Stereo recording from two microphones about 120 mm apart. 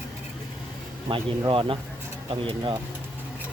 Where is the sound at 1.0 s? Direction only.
45° right (ahead or behind).